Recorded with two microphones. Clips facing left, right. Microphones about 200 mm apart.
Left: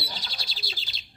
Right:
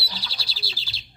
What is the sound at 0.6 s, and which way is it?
Bird, 30° right (ahead or behind).